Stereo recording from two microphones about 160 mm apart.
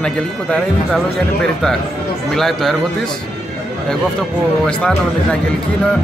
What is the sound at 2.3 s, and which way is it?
Speech, centre (ahead or behind).